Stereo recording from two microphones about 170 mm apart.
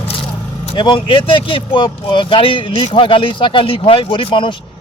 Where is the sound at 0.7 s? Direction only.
25° left (ahead or behind).